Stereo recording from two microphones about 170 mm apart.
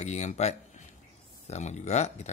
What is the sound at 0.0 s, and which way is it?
Speech, 45° left (ahead or behind).